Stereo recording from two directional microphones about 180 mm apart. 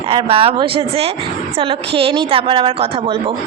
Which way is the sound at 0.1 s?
30° right (ahead or behind).